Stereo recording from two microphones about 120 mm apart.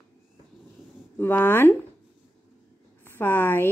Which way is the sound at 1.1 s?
15° left (ahead or behind).